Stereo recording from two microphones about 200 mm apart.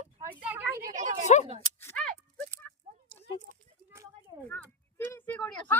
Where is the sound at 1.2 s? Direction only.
35° left (ahead or behind).